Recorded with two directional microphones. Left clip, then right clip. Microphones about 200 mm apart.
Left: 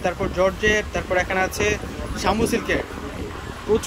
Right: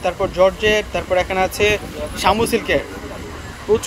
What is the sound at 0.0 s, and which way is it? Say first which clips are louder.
Speech: right 5 dB; 5° left (ahead or behind).